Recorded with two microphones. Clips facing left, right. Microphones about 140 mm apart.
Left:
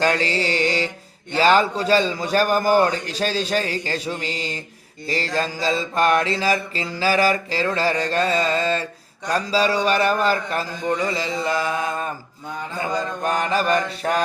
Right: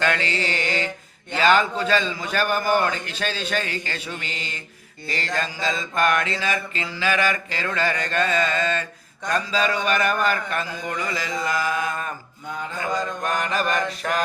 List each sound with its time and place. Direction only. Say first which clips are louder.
0.0 s mantra: left 3 dB; 35° left (ahead or behind)
9.3 s a man's voice: left 3 dB; 35° left (ahead or behind)
12.8 s mantra: left 2 dB; 30° left (ahead or behind)